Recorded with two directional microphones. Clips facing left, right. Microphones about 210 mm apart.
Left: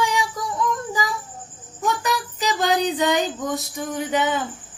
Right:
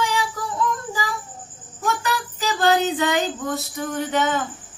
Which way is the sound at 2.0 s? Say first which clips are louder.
Left 1 dB; 20° left (ahead or behind).